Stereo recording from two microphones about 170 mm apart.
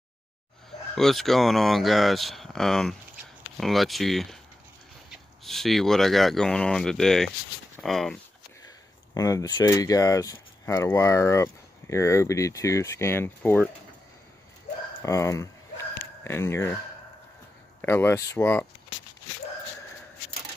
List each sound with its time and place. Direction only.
0.9 s speech: centre (ahead or behind)
5.4 s speech: centre (ahead or behind)
8.6 s speech: 20° left (ahead or behind)
15.0 s speech: 15° left (ahead or behind)
16.0 s dog: 15° left (ahead or behind)
17.8 s speech: 15° left (ahead or behind)